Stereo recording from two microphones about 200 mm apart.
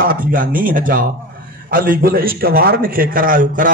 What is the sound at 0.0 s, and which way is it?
A man's voice, 45° right (ahead or behind).